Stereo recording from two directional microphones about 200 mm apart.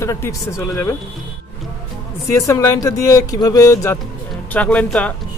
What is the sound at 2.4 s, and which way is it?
Speech, 15° left (ahead or behind).